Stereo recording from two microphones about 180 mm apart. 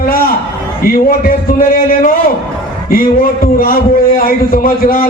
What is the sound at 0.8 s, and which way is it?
A man's voice, 50° left (ahead or behind).